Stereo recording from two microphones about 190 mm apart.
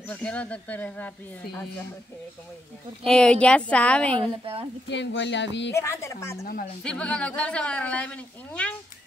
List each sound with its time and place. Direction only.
0.1 s speech: 5° left (ahead or behind)
3.1 s speech: 5° left (ahead or behind)
4.2 s a woman's voice: 30° right (ahead or behind)
4.8 s speech: 70° left (ahead or behind)
5.8 s speech: 15° left (ahead or behind)
6.4 s a woman's voice: 50° left (ahead or behind)
6.8 s speech: 5° left (ahead or behind)